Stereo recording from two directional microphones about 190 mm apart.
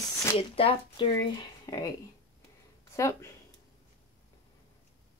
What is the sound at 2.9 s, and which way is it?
Speech, 15° left (ahead or behind).